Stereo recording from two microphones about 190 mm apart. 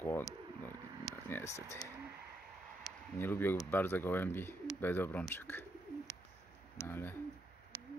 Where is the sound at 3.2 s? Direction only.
10° left (ahead or behind).